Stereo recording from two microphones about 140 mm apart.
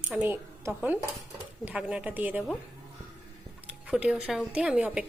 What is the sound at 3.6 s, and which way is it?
Speech, 10° right (ahead or behind).